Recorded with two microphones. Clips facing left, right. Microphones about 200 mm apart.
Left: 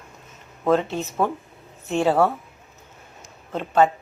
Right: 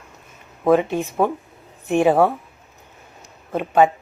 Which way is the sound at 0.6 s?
15° right (ahead or behind).